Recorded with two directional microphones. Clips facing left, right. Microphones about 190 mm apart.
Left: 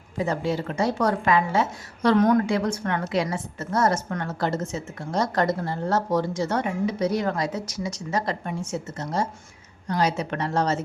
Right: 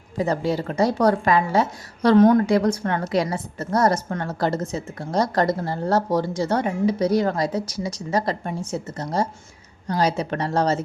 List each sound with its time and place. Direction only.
0.2 s a woman's voice: 35° right (ahead or behind)